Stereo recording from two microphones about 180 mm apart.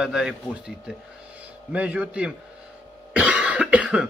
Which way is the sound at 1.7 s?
5° right (ahead or behind).